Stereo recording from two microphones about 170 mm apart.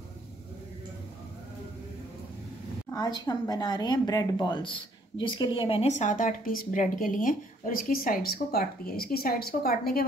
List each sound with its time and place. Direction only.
2.9 s speech: 25° left (ahead or behind); by 10.0 s 60° left (ahead or behind)